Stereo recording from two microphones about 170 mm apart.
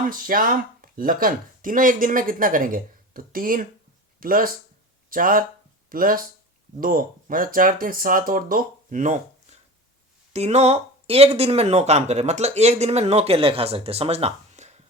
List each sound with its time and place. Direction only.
0.0 s speech: 55° right (ahead or behind)